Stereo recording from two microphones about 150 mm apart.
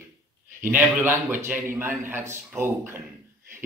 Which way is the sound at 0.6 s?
10° right (ahead or behind).